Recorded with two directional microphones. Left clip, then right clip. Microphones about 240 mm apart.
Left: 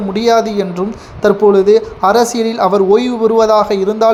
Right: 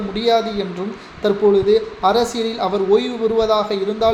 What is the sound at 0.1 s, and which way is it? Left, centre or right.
A man's voice, left.